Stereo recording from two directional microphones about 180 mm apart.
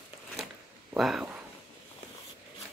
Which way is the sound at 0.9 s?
Centre (ahead or behind).